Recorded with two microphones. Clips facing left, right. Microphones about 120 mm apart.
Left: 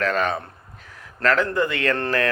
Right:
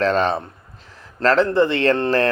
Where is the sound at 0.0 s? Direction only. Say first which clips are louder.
Right 4 dB; 30° right (ahead or behind).